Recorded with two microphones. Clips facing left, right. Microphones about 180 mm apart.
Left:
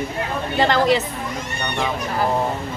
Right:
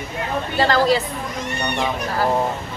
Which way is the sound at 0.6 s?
20° left (ahead or behind).